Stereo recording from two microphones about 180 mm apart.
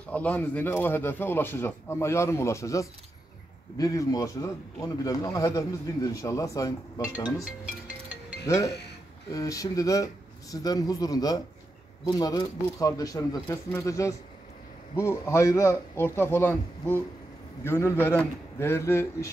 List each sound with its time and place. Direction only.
0.1 s a man's voice: 10° left (ahead or behind)
7.4 s music: 5° right (ahead or behind)
8.5 s a man's voice: 15° left (ahead or behind)